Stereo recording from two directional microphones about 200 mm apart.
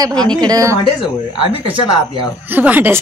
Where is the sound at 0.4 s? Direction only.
15° right (ahead or behind).